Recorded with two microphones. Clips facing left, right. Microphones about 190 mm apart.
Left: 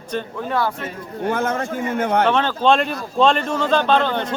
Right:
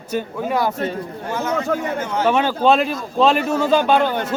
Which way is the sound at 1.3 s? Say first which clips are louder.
Right 1 dB; 55° left (ahead or behind).